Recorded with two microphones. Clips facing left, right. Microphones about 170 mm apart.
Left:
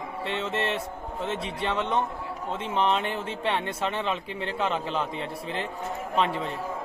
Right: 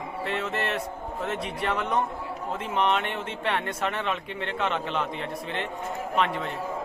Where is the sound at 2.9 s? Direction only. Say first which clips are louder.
Even; 30° left (ahead or behind).